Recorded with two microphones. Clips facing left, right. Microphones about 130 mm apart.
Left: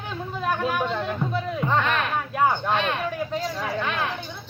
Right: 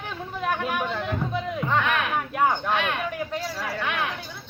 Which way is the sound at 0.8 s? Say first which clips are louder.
Left 2 dB; 20° left (ahead or behind).